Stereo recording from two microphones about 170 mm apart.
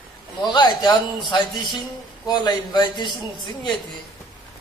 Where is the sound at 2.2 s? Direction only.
25° left (ahead or behind).